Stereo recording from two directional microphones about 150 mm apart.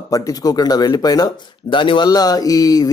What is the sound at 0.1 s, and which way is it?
Speech, 25° left (ahead or behind).